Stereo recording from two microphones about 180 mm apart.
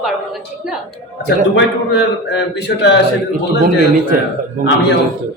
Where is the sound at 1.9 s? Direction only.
70° left (ahead or behind).